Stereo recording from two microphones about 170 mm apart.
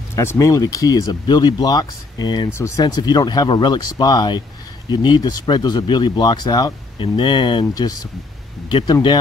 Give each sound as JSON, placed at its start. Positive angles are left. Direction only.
{"t": 0.1, "sound": "speech", "side_deg": 15}